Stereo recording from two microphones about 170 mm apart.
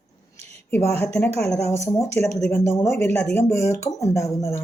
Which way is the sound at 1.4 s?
5° left (ahead or behind).